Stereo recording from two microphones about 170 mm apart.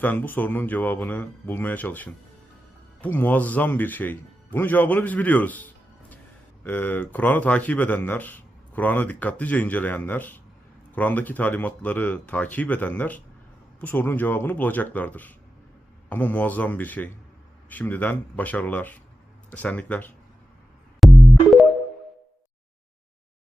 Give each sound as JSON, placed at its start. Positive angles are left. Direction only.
{"t": 0.0, "sound": "speech", "side_deg": 10}
{"t": 21.0, "sound": "music", "side_deg": 0}